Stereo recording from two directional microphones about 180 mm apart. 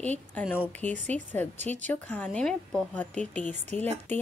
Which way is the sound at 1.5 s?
40° right (ahead or behind).